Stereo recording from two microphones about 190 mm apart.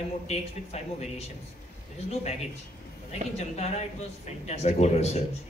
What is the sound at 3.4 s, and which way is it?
Speech, 35° left (ahead or behind).